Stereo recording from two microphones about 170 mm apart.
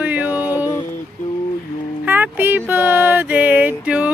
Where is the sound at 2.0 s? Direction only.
10° right (ahead or behind).